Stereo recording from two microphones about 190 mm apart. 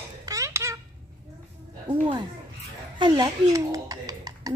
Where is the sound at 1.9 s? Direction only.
25° right (ahead or behind).